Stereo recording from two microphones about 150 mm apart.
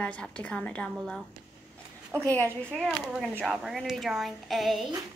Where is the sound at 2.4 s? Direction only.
5° left (ahead or behind).